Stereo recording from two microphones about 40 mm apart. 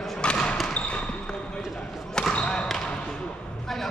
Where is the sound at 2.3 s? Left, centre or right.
Left.